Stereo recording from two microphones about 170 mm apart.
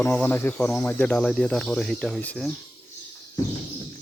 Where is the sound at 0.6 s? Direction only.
Centre (ahead or behind).